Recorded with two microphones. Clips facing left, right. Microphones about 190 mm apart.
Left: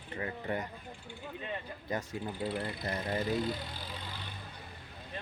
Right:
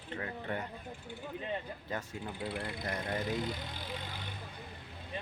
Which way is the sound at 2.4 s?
25° left (ahead or behind).